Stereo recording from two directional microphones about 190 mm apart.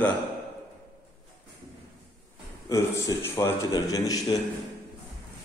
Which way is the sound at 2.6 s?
15° left (ahead or behind).